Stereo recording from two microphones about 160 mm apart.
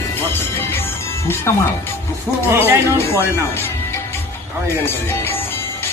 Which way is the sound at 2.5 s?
15° right (ahead or behind).